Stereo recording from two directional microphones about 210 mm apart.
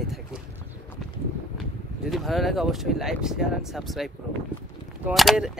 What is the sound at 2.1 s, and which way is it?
Speech, centre (ahead or behind).